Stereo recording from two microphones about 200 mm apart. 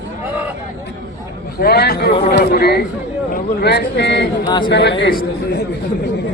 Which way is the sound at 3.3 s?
55° left (ahead or behind).